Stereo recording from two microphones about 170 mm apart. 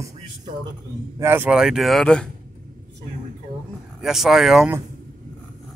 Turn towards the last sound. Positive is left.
turn(degrees=-5)  # may be behind; listen again after turning